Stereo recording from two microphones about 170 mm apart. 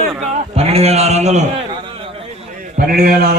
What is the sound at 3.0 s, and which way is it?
Speech, 65° right (ahead or behind).